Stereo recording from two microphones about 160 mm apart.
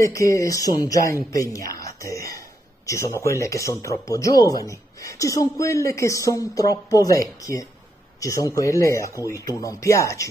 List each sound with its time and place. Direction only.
0.0 s speech: 20° left (ahead or behind)